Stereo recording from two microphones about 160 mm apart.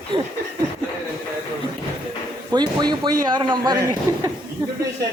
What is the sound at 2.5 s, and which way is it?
Speech, 25° right (ahead or behind).